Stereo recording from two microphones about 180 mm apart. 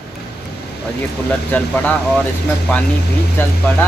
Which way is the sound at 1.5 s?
10° left (ahead or behind).